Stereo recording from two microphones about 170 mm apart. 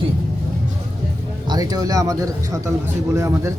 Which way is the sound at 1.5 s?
25° right (ahead or behind).